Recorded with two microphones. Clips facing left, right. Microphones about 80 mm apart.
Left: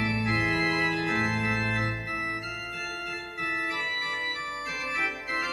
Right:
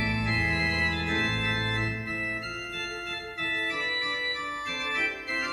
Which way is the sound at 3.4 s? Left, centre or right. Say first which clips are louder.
Even; centre.